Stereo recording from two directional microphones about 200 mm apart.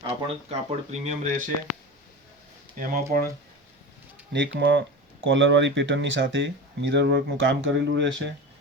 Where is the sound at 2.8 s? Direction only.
45° right (ahead or behind).